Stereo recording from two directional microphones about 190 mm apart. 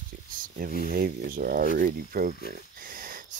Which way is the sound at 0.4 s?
50° right (ahead or behind).